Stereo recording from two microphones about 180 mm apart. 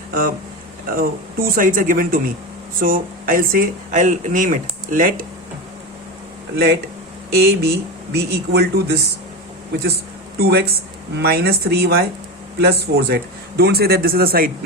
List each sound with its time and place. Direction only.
0.1 s speech: 50° right (ahead or behind)
7.3 s speech: 60° right (ahead or behind)
10.3 s speech: 60° right (ahead or behind)